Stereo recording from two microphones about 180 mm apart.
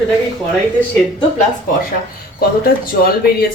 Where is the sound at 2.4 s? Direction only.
55° left (ahead or behind).